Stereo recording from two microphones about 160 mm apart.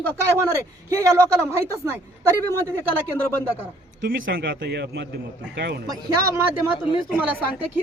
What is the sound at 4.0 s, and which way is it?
Speech, 75° right (ahead or behind).